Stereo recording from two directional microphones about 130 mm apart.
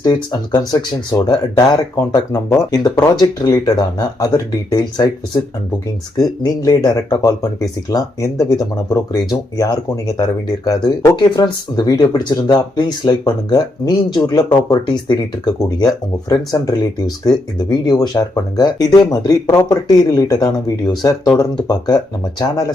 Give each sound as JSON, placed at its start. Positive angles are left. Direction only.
{"t": 0.0, "sound": "speech", "side_deg": 30}